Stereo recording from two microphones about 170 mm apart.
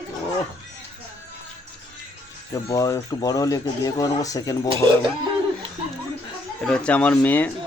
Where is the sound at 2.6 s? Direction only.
20° left (ahead or behind).